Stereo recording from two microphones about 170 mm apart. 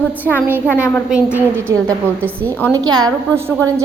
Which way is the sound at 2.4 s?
10° left (ahead or behind).